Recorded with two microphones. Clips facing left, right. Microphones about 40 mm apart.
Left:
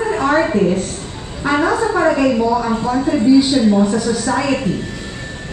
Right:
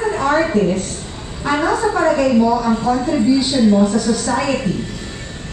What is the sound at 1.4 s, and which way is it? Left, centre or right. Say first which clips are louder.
Speech: left 1 dB; centre.